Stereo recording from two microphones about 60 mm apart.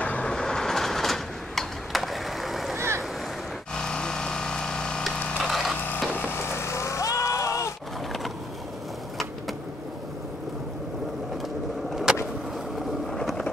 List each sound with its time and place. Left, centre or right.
0.0 s train: left
0.3 s a sound: centre
3.7 s splinter: centre
5.4 s wood: centre
6.1 s wood: left
6.5 s vehicle: left
11.9 s a sound: centre
12.7 s boat: centre